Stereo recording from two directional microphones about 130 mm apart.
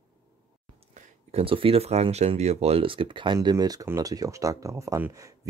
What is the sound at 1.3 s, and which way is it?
Speech, 45° right (ahead or behind).